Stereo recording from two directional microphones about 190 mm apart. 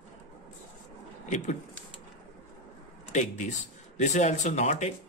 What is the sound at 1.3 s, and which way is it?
Speech, 40° left (ahead or behind).